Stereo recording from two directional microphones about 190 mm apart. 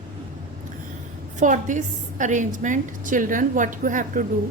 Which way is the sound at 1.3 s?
40° right (ahead or behind).